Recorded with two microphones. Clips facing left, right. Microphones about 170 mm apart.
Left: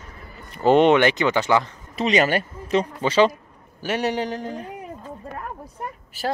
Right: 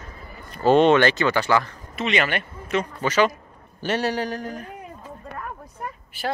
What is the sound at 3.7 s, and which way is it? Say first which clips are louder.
Speech: right 1 dB; 10° left (ahead or behind).